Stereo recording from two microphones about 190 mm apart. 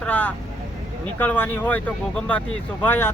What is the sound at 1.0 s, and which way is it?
Speech, 10° left (ahead or behind).